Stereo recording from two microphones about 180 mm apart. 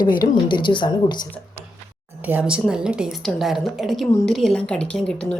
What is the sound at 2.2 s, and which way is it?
A woman's voice, 5° right (ahead or behind).